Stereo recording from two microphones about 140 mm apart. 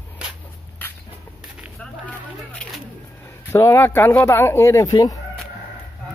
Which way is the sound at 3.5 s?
20° left (ahead or behind).